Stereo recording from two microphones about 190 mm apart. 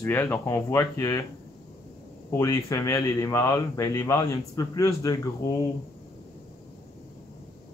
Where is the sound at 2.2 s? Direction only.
15° left (ahead or behind).